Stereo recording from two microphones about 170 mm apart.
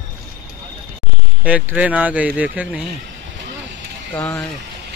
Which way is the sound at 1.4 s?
10° right (ahead or behind).